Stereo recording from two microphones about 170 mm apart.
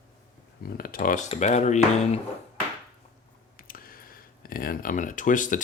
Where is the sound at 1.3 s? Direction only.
40° left (ahead or behind).